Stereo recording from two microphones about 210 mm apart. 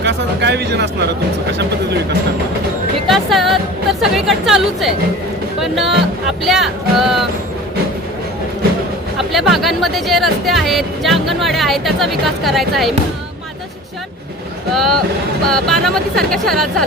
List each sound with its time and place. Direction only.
0.0 s speech: 55° right (ahead or behind)
3.1 s speech: centre (ahead or behind)
9.1 s speech: centre (ahead or behind)
14.7 s speech: centre (ahead or behind)